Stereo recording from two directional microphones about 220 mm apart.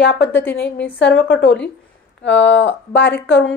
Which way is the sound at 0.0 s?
55° left (ahead or behind).